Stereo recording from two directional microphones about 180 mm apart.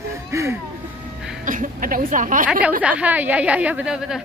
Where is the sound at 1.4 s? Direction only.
45° right (ahead or behind).